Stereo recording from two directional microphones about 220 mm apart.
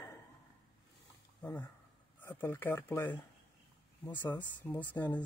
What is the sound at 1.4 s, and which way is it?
Speech, 10° left (ahead or behind).